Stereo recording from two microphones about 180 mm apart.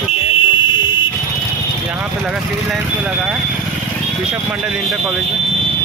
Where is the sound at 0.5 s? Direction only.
25° left (ahead or behind).